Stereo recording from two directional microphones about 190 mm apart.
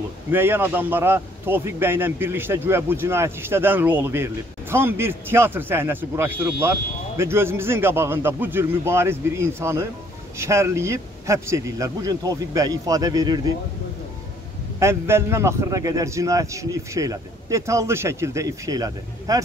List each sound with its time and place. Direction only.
0.3 s a man's voice: 10° right (ahead or behind)
14.8 s a man's voice: 15° right (ahead or behind)